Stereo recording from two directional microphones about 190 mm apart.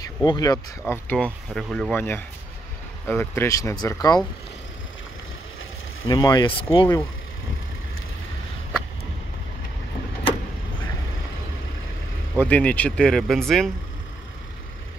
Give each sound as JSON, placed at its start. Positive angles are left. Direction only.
{"t": 0.0, "sound": "speech", "side_deg": 20}
{"t": 1.0, "sound": "speech", "side_deg": 5}
{"t": 6.0, "sound": "speech", "side_deg": 20}
{"t": 12.4, "sound": "speech", "side_deg": 10}